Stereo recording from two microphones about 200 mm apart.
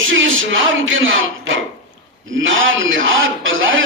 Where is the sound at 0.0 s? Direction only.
75° right (ahead or behind).